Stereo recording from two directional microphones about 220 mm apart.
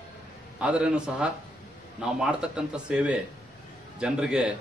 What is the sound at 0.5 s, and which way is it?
A man's voice, 5° right (ahead or behind).